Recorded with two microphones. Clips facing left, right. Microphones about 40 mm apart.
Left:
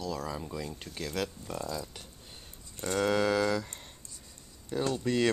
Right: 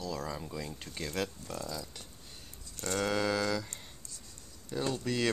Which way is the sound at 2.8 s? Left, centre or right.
Centre.